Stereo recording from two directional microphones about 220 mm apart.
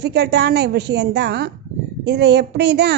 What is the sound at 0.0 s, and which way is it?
A woman's voice, 50° right (ahead or behind).